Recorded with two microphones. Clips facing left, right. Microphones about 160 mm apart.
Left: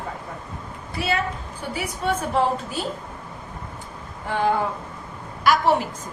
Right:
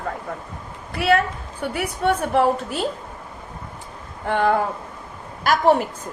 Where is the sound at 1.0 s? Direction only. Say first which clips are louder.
Right 6 dB; 60° right (ahead or behind).